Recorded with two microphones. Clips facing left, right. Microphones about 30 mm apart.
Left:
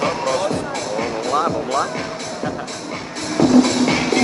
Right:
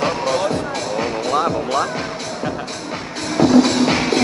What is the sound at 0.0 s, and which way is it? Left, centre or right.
Music, centre.